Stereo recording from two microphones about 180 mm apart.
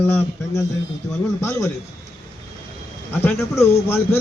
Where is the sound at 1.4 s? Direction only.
15° left (ahead or behind).